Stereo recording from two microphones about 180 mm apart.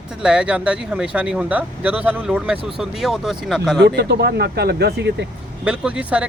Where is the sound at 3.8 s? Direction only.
70° right (ahead or behind).